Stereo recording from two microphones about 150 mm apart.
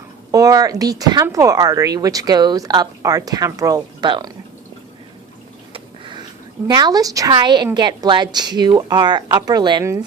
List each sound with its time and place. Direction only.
0.3 s speech: 25° right (ahead or behind)
5.7 s a sound: 30° right (ahead or behind)
6.7 s speech: 25° right (ahead or behind)